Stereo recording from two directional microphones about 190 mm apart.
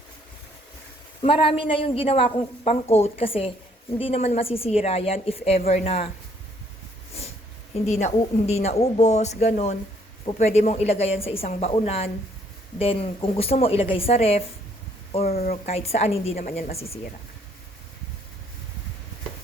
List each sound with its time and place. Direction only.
1.2 s a woman's voice: 30° left (ahead or behind)
7.9 s a woman's voice: 35° left (ahead or behind)
15.3 s speech: 50° left (ahead or behind)
15.6 s a woman's voice: 35° left (ahead or behind)
16.5 s speech: 50° left (ahead or behind)